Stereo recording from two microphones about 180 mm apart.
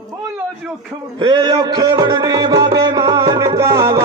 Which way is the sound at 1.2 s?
25° right (ahead or behind).